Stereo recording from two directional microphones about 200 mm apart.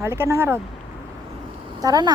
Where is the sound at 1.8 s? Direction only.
20° right (ahead or behind).